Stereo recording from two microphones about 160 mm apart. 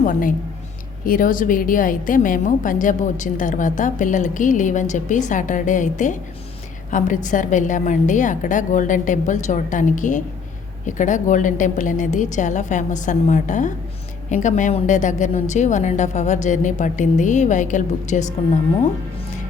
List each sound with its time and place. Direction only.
0.0 s a woman's voice: 60° left (ahead or behind)